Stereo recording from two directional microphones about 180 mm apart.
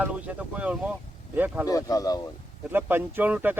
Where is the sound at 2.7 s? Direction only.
10° right (ahead or behind).